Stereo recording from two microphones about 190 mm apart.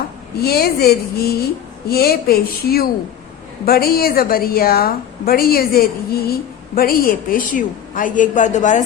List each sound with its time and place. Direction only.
0.3 s a woman's voice: 55° left (ahead or behind)